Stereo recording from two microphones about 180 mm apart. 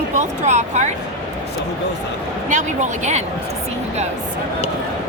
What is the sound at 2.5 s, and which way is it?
Speech, 45° right (ahead or behind).